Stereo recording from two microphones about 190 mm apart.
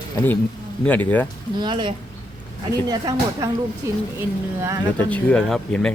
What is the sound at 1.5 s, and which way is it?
Speech, 25° right (ahead or behind).